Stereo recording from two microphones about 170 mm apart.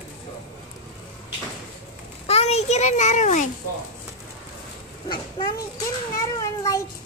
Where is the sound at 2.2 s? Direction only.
40° left (ahead or behind).